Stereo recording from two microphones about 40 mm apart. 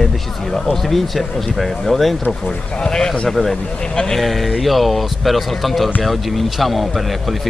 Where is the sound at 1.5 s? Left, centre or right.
Centre.